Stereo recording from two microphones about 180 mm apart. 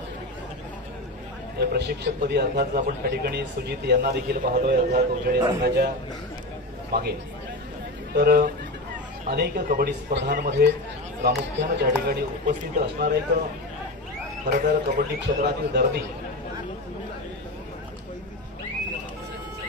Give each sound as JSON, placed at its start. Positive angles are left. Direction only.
{"t": 1.6, "sound": "a man's voice", "side_deg": -60}
{"t": 6.9, "sound": "a man's voice", "side_deg": -65}
{"t": 11.2, "sound": "a man's voice", "side_deg": -75}
{"t": 14.5, "sound": "a man's voice", "side_deg": -45}
{"t": 15.1, "sound": "a man's voice", "side_deg": -70}